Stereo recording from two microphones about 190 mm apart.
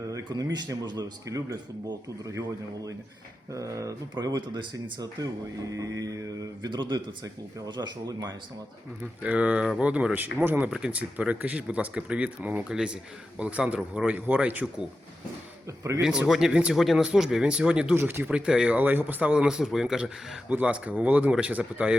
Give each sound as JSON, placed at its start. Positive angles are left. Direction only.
{"t": 0.1, "sound": "a man's voice", "side_deg": -20}
{"t": 9.2, "sound": "speech", "side_deg": -5}
{"t": 16.0, "sound": "speech", "side_deg": -5}